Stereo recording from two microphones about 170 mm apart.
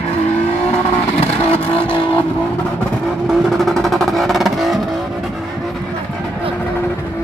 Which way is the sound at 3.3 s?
Centre (ahead or behind).